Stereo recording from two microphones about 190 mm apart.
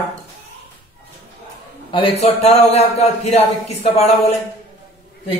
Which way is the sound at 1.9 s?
30° left (ahead or behind).